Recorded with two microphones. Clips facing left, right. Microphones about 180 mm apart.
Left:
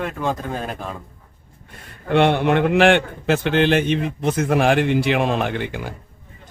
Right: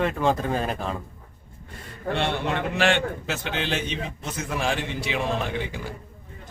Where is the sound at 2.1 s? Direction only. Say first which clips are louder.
Left 10 dB; 60° left (ahead or behind).